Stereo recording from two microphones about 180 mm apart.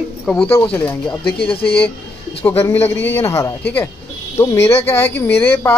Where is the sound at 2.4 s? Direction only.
10° left (ahead or behind).